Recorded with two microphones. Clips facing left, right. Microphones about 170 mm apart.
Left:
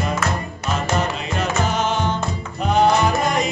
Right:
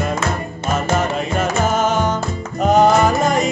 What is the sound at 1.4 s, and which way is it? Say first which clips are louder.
Music: right 3 dB; 45° right (ahead or behind).